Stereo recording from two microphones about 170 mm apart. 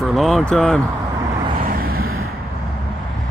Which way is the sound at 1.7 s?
60° right (ahead or behind).